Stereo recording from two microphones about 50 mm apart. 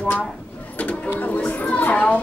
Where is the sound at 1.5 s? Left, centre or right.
Left.